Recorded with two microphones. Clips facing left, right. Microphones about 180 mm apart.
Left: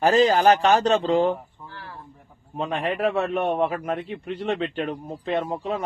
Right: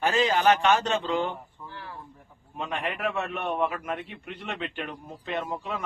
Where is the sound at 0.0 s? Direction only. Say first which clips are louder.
Left 6 dB; 35° left (ahead or behind).